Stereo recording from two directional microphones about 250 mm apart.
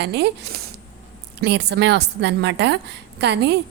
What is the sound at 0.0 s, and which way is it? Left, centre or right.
A woman's voice, right.